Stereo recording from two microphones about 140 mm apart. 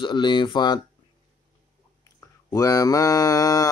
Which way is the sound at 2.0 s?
25° left (ahead or behind).